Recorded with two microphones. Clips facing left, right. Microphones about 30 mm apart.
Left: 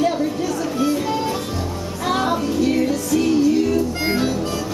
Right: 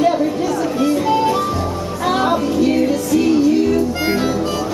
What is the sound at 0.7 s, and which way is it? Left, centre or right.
Music, centre.